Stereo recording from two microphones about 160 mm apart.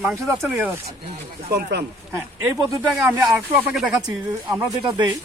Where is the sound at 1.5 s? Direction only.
90° right.